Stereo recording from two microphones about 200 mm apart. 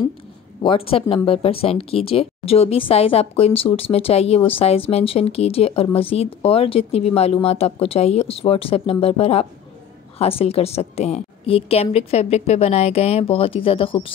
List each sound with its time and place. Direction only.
0.6 s a woman's voice: 30° left (ahead or behind)